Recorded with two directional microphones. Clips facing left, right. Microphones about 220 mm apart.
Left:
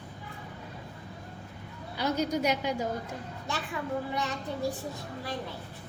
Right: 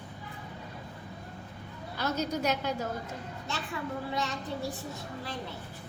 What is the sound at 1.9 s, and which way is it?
Speech, 15° left (ahead or behind).